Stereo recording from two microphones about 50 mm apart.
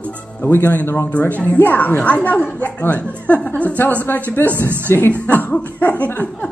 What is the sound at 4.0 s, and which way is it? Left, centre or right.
Speech, left.